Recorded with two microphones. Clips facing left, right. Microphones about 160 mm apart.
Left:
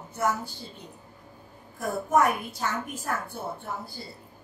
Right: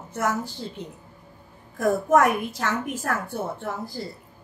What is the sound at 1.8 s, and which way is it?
A woman's voice, 90° right.